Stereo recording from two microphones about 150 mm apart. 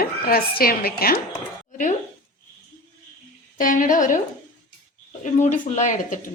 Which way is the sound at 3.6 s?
60° left (ahead or behind).